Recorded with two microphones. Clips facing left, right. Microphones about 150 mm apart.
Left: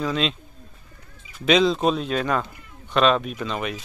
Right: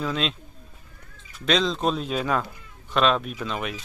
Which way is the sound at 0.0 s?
Centre (ahead or behind).